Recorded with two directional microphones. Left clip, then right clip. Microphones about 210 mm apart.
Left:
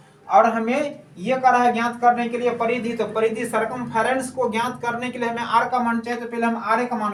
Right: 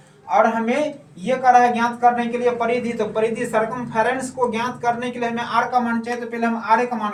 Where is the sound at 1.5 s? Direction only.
15° left (ahead or behind).